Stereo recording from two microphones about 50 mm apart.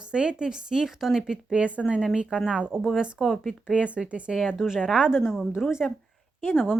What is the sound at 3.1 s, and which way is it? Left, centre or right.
Speech, centre.